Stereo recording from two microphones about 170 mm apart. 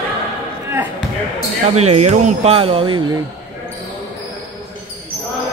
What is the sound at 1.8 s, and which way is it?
Speech, 40° right (ahead or behind).